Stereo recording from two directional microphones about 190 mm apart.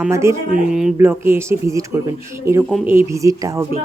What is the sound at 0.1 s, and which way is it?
Speech, 15° right (ahead or behind).